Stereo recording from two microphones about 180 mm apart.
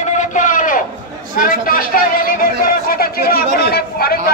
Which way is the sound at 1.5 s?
50° left (ahead or behind).